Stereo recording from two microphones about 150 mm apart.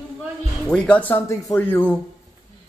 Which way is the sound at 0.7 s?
10° left (ahead or behind).